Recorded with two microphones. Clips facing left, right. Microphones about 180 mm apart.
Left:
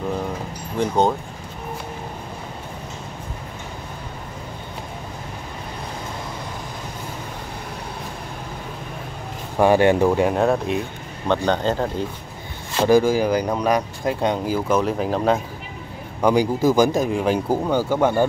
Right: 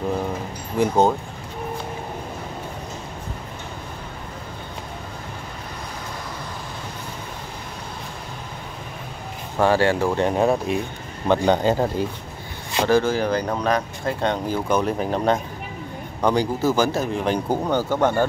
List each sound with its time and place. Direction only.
0.7 s speech: 5° right (ahead or behind)
9.6 s speech: 15° left (ahead or behind)
10.1 s a man's voice: centre (ahead or behind)
12.8 s speech: 10° left (ahead or behind)